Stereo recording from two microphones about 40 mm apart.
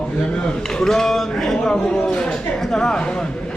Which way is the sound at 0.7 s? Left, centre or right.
Centre.